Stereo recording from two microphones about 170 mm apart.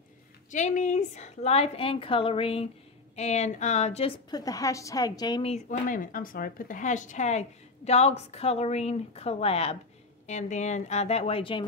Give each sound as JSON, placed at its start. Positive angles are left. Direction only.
{"t": 0.5, "sound": "speech", "side_deg": 45}
{"t": 4.3, "sound": "a woman's voice", "side_deg": 20}
{"t": 5.5, "sound": "speech", "side_deg": 50}